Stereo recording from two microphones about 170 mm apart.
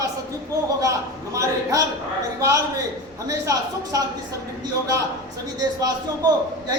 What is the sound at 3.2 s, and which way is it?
Speech, 20° right (ahead or behind).